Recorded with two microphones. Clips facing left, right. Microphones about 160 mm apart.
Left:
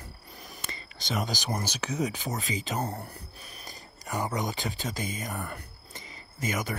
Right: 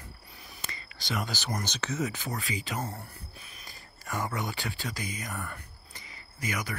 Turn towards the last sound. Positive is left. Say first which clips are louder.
# left 3 dB
turn(degrees=25)  # may be behind; listen again after turning